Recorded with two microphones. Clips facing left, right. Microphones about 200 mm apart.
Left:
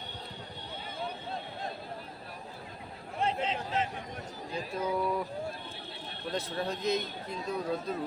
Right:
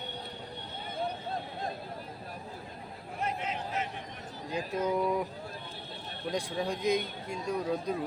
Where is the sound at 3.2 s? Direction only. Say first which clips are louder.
Left 3 dB; 30° left (ahead or behind).